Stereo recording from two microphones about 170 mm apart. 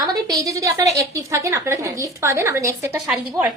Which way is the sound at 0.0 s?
25° right (ahead or behind).